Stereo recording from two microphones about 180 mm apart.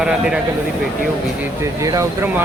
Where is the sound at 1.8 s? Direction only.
15° right (ahead or behind).